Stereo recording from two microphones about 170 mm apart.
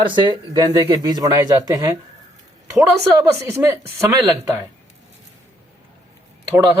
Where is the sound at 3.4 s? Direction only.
15° right (ahead or behind).